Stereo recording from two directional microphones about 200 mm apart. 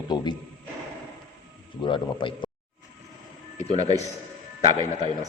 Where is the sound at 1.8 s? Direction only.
25° left (ahead or behind).